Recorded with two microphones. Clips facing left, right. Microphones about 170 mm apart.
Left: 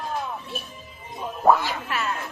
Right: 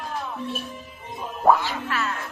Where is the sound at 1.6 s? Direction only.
15° left (ahead or behind).